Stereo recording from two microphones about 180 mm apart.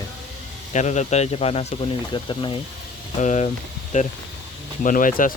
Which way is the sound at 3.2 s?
40° left (ahead or behind).